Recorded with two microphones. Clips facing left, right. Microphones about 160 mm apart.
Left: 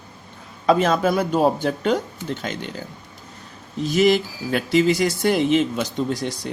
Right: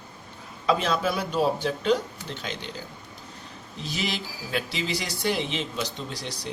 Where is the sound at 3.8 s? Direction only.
50° left (ahead or behind).